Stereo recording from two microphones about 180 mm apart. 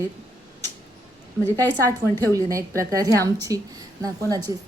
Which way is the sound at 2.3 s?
15° right (ahead or behind).